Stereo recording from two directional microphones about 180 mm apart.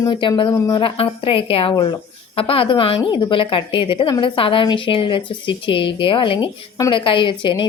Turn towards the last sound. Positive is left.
turn(degrees=25)  # may be behind; listen again after turning